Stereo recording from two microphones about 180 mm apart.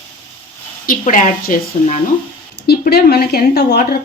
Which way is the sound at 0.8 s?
45° left (ahead or behind).